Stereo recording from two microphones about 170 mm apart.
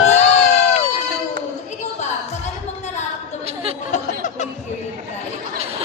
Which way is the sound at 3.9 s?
50° left (ahead or behind).